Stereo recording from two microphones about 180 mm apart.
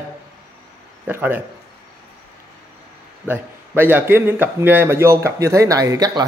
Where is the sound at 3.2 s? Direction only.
10° right (ahead or behind).